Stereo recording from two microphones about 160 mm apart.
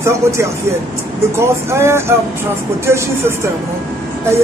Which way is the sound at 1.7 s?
15° right (ahead or behind).